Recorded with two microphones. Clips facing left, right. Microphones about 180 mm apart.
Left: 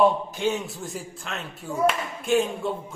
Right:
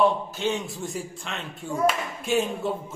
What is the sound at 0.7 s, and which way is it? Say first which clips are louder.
A man's voice: right 2 dB; centre (ahead or behind).